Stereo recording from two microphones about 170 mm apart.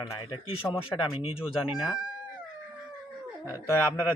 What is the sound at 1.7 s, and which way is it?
Speech, 5° right (ahead or behind).